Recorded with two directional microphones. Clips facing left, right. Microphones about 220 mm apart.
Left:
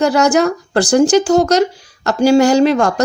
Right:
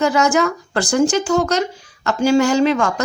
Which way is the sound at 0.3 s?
35° left (ahead or behind).